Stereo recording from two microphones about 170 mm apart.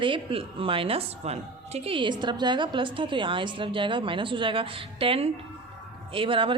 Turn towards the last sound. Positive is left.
turn(degrees=-30)  # may be behind; listen again after turning